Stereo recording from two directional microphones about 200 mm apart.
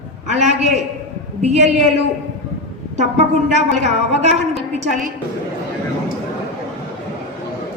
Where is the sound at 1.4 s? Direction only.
35° right (ahead or behind).